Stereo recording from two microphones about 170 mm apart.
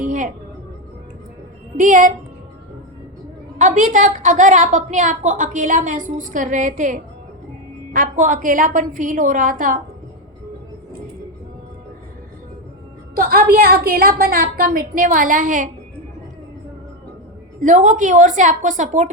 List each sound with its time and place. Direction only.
0.0 s music: 50° right (ahead or behind)
1.7 s a woman's voice: 50° right (ahead or behind)
3.6 s a woman's voice: 45° right (ahead or behind)
13.1 s a woman's voice: 60° right (ahead or behind)
17.6 s a woman's voice: 50° right (ahead or behind)